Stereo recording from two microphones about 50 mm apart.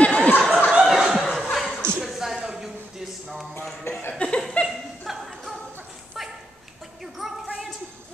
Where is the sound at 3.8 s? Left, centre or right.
Left.